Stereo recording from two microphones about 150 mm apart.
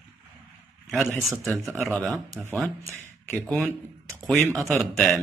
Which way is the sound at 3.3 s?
Centre (ahead or behind).